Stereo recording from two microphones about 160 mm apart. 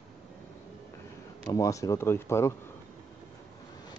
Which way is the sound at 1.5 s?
20° left (ahead or behind).